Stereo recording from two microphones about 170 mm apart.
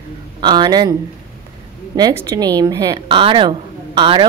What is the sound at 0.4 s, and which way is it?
Speech, 25° right (ahead or behind).